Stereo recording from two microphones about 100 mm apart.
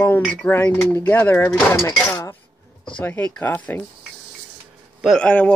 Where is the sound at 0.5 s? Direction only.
20° left (ahead or behind).